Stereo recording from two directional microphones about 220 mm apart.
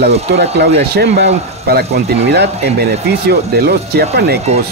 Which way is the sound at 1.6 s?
45° right (ahead or behind).